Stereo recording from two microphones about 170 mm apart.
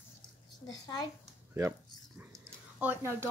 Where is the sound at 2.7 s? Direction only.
10° right (ahead or behind).